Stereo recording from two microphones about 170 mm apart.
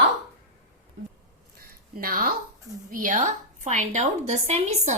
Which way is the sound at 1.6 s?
60° right (ahead or behind).